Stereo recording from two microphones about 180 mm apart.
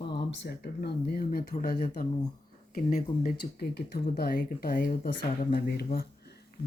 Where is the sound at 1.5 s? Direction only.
45° left (ahead or behind).